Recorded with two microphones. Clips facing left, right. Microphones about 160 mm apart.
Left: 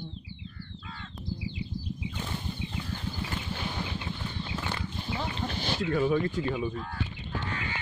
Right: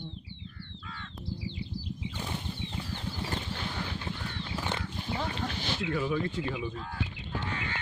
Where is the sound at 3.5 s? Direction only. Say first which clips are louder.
Left 2 dB; 15° left (ahead or behind).